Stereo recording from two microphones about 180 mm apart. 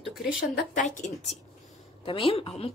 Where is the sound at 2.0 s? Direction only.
30° left (ahead or behind).